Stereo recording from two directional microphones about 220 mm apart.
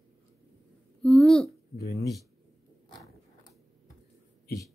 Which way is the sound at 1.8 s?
45° left (ahead or behind).